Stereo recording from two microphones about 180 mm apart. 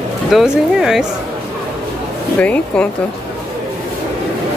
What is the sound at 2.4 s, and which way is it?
Speech, 5° left (ahead or behind).